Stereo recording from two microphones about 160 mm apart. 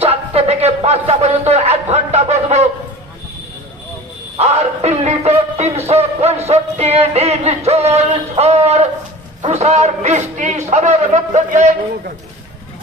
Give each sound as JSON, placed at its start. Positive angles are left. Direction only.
{"t": 0.0, "sound": "a sound", "side_deg": -40}
{"t": 4.4, "sound": "music", "side_deg": -40}
{"t": 9.4, "sound": "a man's voice", "side_deg": -45}